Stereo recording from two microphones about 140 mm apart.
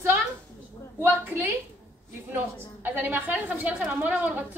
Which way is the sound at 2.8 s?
15° right (ahead or behind).